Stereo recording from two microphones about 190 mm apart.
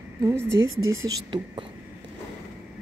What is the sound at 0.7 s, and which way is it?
Speech, 90° right.